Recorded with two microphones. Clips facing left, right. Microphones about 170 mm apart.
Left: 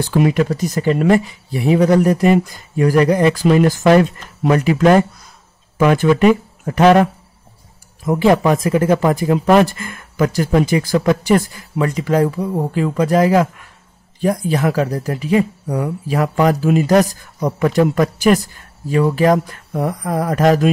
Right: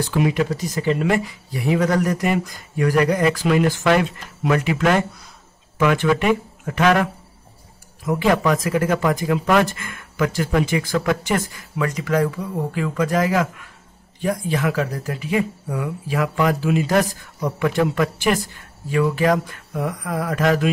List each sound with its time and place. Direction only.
0.1 s speech: 50° left (ahead or behind)
1.2 s speech: 25° left (ahead or behind)